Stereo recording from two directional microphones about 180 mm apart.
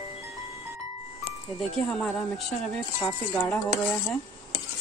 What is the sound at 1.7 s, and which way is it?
Speech, centre (ahead or behind).